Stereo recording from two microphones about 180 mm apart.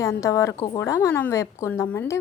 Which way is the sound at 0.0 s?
15° left (ahead or behind).